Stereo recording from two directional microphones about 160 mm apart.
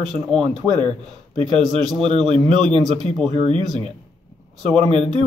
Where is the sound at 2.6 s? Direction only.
30° right (ahead or behind).